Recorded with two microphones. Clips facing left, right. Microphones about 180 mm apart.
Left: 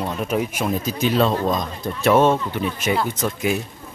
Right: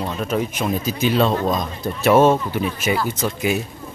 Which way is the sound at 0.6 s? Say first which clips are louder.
Right 1 dB; centre (ahead or behind).